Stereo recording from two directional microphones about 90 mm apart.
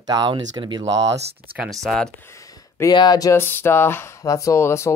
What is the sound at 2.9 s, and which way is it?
Speech, 50° left (ahead or behind).